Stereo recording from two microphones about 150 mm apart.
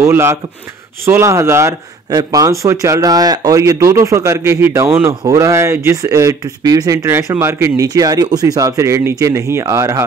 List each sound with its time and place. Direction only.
0.0 s a man's voice: 15° right (ahead or behind)